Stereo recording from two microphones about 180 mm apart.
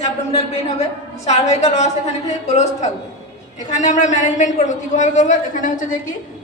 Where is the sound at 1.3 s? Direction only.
40° left (ahead or behind).